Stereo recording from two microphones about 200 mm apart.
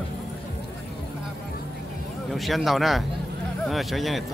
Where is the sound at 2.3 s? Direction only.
Centre (ahead or behind).